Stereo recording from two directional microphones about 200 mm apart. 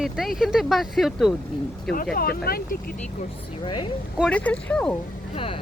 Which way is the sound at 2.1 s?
50° left (ahead or behind).